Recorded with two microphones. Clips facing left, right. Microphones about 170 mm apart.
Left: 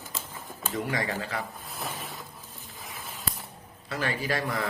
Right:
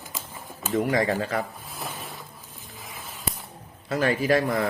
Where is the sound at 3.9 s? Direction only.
45° right (ahead or behind).